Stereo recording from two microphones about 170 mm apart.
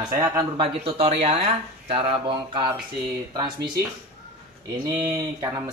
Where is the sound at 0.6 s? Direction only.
35° right (ahead or behind).